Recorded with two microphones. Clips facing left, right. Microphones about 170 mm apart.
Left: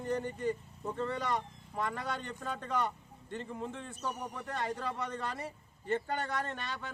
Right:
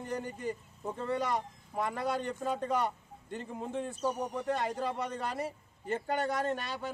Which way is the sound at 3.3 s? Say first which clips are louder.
Right 2 dB; 10° right (ahead or behind).